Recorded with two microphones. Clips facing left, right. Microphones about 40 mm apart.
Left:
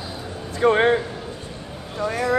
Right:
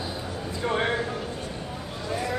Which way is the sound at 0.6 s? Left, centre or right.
Left.